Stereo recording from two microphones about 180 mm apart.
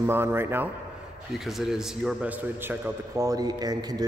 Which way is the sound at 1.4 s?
Centre (ahead or behind).